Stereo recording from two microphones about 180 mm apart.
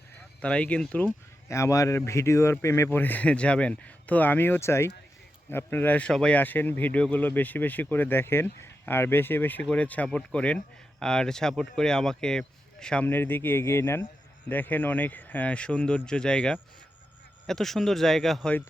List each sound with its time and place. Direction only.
0.4 s speech: 5° left (ahead or behind)